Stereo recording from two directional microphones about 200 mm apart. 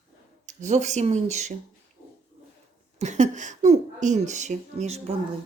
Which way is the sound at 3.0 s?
35° right (ahead or behind).